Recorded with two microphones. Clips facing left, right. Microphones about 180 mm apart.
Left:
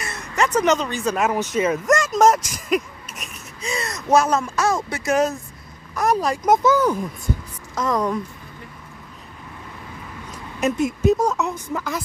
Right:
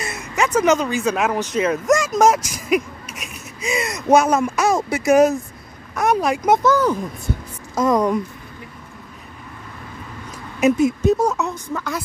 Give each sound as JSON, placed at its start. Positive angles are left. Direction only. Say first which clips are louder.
{"t": 0.1, "sound": "speech", "louder": "right 1 dB", "side_deg": -5}
{"t": 5.9, "sound": "speech", "louder": "right 2 dB", "side_deg": -10}
{"t": 6.7, "sound": "speech", "louder": "right 1 dB", "side_deg": 5}
{"t": 7.7, "sound": "a woman's voice", "louder": "right 5 dB", "side_deg": -20}
{"t": 10.6, "sound": "speech", "louder": "right 4 dB", "side_deg": 0}